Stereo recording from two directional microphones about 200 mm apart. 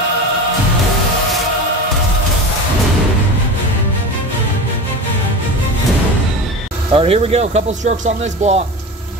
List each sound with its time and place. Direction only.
6.9 s speech: 30° right (ahead or behind)